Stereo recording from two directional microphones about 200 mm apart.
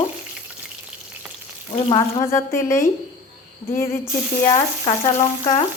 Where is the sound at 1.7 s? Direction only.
20° left (ahead or behind).